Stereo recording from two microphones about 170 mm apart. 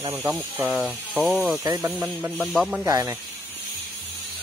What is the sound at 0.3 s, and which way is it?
Speech, 10° right (ahead or behind).